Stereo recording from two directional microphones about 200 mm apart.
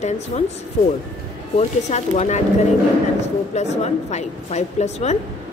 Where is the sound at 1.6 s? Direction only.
35° left (ahead or behind).